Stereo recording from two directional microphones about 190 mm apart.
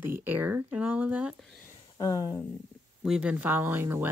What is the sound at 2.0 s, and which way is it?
Speech, 20° left (ahead or behind).